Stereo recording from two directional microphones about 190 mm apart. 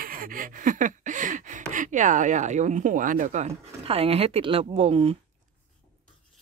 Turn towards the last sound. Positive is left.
turn(degrees=-30)  # may be behind; listen again after turning